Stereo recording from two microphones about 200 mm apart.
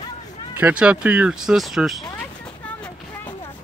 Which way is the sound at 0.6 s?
10° right (ahead or behind).